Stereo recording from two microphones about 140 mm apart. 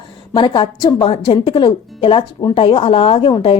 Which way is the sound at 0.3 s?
35° left (ahead or behind).